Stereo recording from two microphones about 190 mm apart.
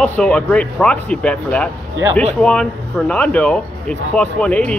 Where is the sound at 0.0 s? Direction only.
5° left (ahead or behind).